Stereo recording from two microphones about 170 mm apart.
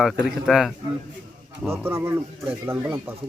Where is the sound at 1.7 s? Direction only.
15° right (ahead or behind).